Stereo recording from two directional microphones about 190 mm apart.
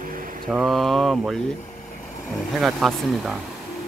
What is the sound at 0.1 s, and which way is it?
Mantra, 45° right (ahead or behind).